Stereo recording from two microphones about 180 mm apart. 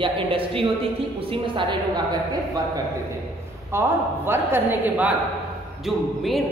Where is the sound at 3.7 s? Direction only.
15° right (ahead or behind).